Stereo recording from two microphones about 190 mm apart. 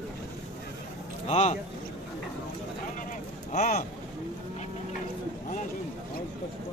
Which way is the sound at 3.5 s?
40° left (ahead or behind).